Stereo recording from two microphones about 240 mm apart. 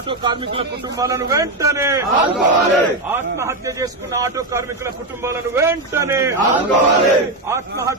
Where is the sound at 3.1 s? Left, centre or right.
Centre.